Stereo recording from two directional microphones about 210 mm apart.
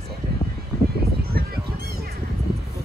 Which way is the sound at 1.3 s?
45° right (ahead or behind).